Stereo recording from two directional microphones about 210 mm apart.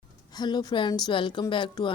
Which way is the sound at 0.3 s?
20° left (ahead or behind).